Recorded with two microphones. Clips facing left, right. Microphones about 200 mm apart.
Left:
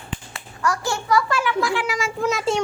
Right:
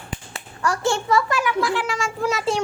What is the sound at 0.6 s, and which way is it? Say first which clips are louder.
Speech: right 2 dB; 30° right (ahead or behind).